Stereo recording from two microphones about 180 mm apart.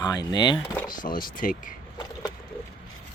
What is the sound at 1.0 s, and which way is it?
Speech, 50° left (ahead or behind).